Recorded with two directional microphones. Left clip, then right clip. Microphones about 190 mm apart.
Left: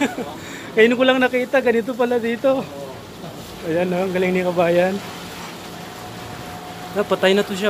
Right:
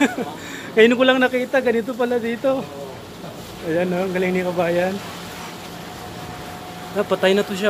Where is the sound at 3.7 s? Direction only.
10° left (ahead or behind); by 4.9 s 35° left (ahead or behind).